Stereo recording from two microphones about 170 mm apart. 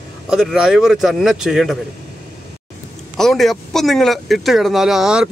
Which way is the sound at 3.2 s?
Centre (ahead or behind).